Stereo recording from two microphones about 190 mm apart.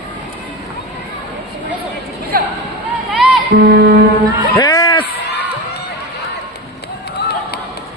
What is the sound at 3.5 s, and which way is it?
Music, 50° right (ahead or behind).